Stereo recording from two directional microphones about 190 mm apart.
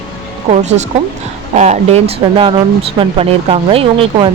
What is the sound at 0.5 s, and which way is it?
Speech, 35° right (ahead or behind).